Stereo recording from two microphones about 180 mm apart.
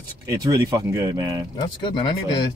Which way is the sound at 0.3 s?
20° right (ahead or behind).